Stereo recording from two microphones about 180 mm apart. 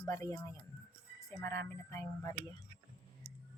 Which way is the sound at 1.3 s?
15° left (ahead or behind).